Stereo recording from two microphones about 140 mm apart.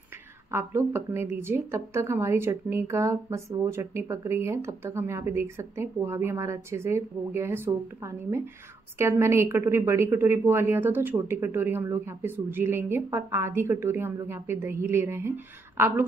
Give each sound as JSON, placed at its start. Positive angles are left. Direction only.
{"t": 0.5, "sound": "a woman's voice", "side_deg": -20}